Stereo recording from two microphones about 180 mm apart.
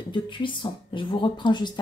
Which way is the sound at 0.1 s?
25° left (ahead or behind).